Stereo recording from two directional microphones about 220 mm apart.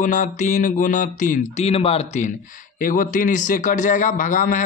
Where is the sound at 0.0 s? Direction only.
35° left (ahead or behind).